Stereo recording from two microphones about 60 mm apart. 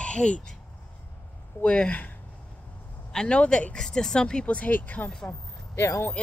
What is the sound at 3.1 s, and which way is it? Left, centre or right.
Speech, centre.